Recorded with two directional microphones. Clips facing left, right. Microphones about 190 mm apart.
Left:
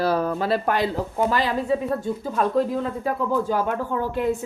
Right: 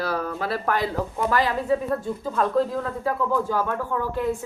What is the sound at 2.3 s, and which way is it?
A woman's voice, 15° left (ahead or behind).